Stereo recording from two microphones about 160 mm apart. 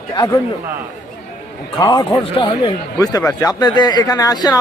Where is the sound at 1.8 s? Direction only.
25° left (ahead or behind).